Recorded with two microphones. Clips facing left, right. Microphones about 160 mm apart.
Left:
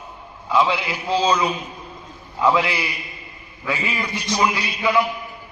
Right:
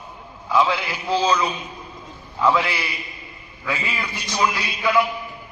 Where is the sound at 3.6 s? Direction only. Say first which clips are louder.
Left 2 dB; 10° left (ahead or behind).